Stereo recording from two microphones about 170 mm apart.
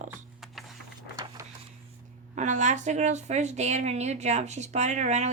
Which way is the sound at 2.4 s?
45° right (ahead or behind).